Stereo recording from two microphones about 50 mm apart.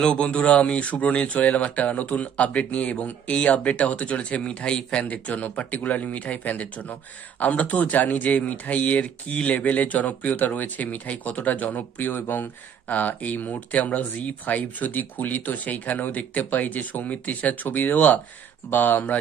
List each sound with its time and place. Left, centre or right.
0.0 s speech: centre
5.0 s a man's voice: left